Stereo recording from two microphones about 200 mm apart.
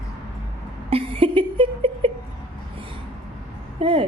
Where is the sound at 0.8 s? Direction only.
30° right (ahead or behind).